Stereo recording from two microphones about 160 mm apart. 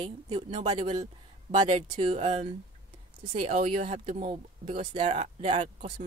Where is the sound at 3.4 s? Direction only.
45° right (ahead or behind).